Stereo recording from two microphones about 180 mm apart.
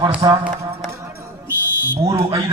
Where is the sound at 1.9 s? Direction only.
20° right (ahead or behind).